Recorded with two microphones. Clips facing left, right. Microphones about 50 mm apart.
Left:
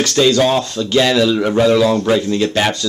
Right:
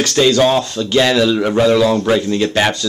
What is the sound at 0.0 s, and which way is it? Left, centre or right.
Speech, right.